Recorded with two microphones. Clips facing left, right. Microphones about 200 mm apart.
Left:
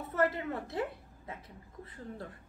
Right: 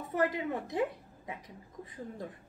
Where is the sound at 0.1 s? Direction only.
15° right (ahead or behind).